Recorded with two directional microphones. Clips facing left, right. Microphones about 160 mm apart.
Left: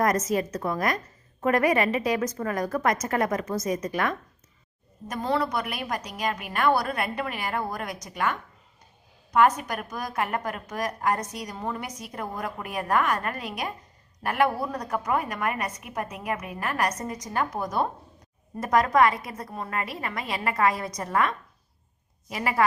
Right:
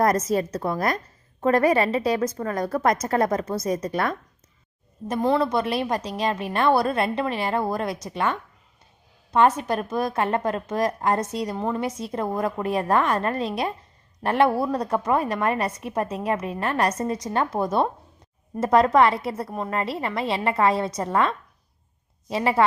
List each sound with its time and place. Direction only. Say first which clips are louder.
0.0 s a woman's voice: right 3 dB; 30° right (ahead or behind)